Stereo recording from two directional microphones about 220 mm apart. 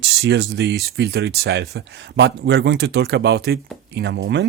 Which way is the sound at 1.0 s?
45° right (ahead or behind).